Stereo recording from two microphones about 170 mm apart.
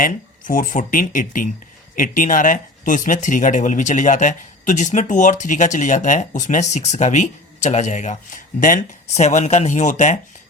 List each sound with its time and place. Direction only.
0.0 s speech: 50° left (ahead or behind)